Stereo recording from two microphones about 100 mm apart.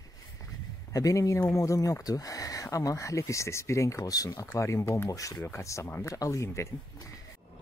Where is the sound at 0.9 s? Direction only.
35° left (ahead or behind).